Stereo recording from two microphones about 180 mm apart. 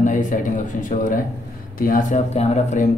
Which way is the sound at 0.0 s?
45° left (ahead or behind).